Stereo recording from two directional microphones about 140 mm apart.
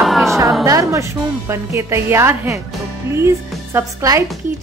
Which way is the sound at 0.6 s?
25° right (ahead or behind).